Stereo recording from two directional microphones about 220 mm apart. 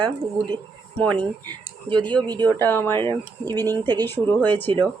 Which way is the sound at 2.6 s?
10° left (ahead or behind).